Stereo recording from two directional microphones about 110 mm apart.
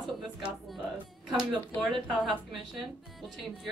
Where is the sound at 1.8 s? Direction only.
Centre (ahead or behind).